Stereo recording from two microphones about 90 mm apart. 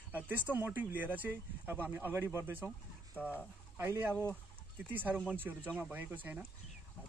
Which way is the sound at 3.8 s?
25° right (ahead or behind).